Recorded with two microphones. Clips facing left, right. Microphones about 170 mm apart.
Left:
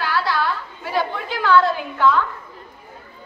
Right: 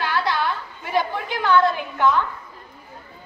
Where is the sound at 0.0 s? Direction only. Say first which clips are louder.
Left 1 dB; 20° right (ahead or behind).